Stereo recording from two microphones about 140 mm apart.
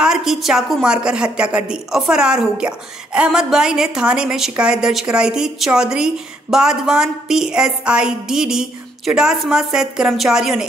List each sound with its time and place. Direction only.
0.0 s a woman's voice: 5° right (ahead or behind)